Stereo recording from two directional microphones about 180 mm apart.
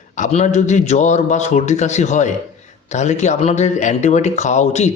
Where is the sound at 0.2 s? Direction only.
40° left (ahead or behind).